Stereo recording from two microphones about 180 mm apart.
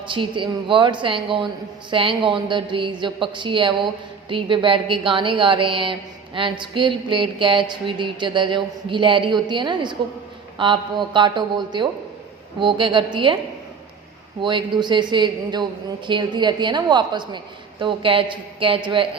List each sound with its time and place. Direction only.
0.1 s a woman's voice: 25° right (ahead or behind)
14.4 s a woman's voice: 25° right (ahead or behind)